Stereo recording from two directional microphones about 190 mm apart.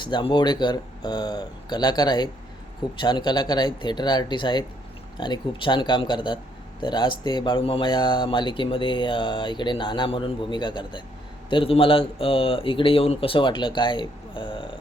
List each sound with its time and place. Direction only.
0.0 s speech: 25° left (ahead or behind)